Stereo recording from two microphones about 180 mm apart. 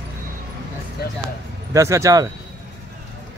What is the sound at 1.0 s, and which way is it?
Speech, 60° left (ahead or behind).